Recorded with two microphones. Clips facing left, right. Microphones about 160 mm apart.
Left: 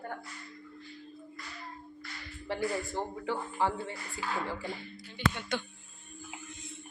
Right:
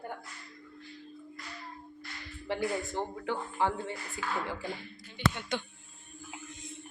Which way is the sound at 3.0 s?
10° left (ahead or behind).